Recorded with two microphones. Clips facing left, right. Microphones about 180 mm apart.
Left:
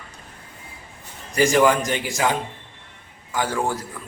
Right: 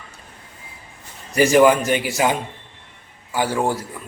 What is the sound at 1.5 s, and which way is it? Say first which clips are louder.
Speech: right 6 dB; 15° right (ahead or behind).